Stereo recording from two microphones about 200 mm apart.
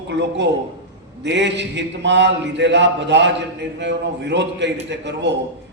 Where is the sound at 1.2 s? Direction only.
60° right (ahead or behind).